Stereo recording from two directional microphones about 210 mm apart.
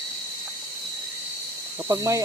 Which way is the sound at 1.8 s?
15° right (ahead or behind).